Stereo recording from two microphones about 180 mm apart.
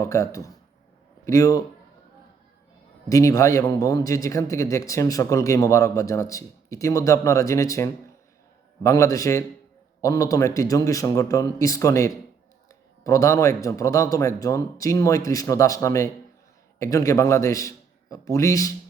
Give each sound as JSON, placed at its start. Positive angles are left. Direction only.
{"t": 0.0, "sound": "a man's voice", "side_deg": 15}
{"t": 3.1, "sound": "a man's voice", "side_deg": 20}